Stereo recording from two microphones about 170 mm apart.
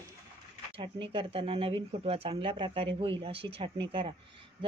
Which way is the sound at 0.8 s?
30° right (ahead or behind).